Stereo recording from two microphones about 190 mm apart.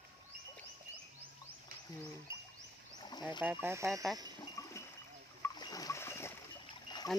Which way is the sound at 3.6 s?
15° right (ahead or behind).